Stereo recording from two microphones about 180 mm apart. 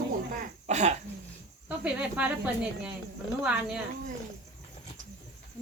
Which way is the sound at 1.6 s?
5° right (ahead or behind).